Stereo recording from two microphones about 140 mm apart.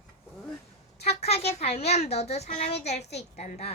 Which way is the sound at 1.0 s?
50° left (ahead or behind).